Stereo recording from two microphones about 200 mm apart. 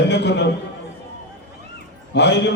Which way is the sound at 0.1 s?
60° left (ahead or behind).